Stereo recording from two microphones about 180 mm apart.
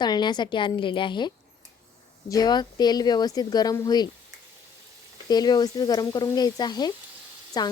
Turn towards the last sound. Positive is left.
turn(degrees=25)  # may be behind; listen again after turning